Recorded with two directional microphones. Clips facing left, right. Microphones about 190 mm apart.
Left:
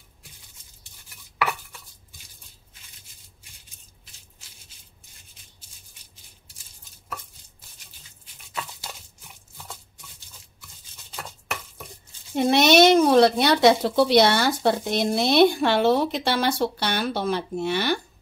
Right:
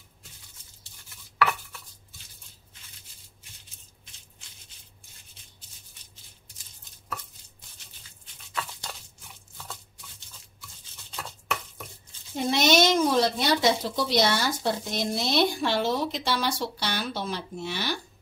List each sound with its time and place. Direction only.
1.4 s chopping: 15° left (ahead or behind)
12.4 s speech: 65° left (ahead or behind)